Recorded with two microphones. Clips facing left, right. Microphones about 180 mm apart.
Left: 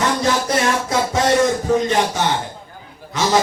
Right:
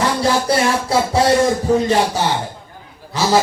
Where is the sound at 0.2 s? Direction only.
30° right (ahead or behind).